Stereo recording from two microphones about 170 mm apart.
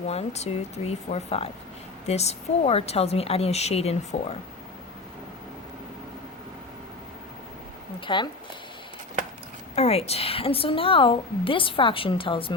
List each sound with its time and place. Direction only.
0.1 s a woman's voice: 40° left (ahead or behind)
8.0 s speech: 25° left (ahead or behind)
9.7 s a woman's voice: 35° left (ahead or behind)